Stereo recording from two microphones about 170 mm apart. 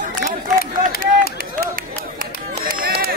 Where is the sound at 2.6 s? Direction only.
55° right (ahead or behind).